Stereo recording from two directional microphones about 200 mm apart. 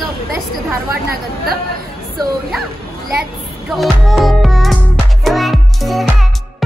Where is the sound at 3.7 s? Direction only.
Centre (ahead or behind).